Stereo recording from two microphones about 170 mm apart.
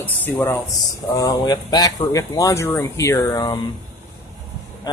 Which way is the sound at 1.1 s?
20° left (ahead or behind).